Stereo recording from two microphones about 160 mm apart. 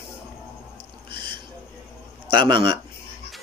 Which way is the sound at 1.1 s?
30° right (ahead or behind).